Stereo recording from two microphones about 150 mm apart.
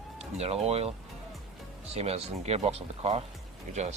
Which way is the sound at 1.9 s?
45° right (ahead or behind).